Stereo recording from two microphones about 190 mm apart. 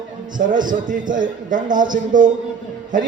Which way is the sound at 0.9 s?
45° right (ahead or behind).